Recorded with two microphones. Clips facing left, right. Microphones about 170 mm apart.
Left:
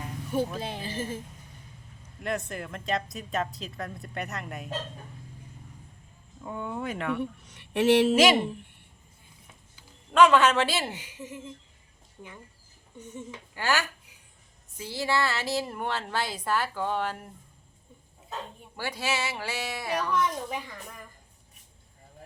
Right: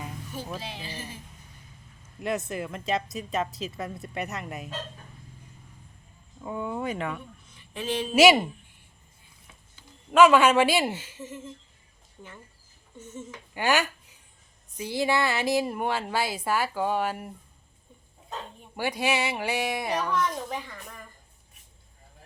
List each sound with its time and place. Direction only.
0.6 s speech: 50° left (ahead or behind)
2.2 s a woman's voice: 5° right (ahead or behind)
6.4 s a woman's voice: 5° right (ahead or behind)
7.2 s speech: 75° left (ahead or behind)
8.1 s speech: 10° right (ahead or behind)
10.1 s speech: 10° right (ahead or behind)
10.9 s speech: 15° left (ahead or behind)
13.0 s speech: 15° left (ahead or behind)
13.5 s speech: 15° right (ahead or behind)
18.8 s speech: 15° right (ahead or behind)
20.1 s speech: 5° left (ahead or behind)